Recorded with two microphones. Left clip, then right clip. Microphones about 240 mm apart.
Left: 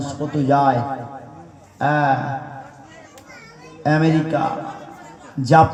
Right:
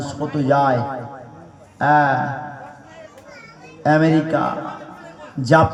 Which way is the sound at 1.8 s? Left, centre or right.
Right.